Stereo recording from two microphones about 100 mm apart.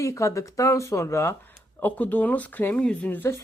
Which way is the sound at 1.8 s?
15° left (ahead or behind).